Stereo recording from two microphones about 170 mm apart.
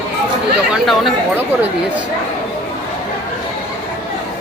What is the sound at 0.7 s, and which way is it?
Speech, centre (ahead or behind).